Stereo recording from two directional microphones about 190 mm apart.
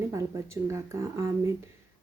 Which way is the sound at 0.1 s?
15° right (ahead or behind).